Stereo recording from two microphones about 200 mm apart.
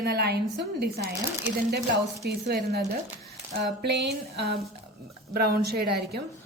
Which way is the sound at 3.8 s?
55° right (ahead or behind).